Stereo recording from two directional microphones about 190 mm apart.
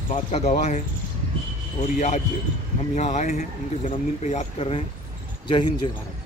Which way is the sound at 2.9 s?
40° left (ahead or behind).